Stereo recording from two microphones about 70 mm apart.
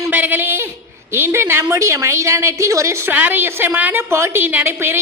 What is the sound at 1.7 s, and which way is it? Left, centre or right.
A woman's voice, right.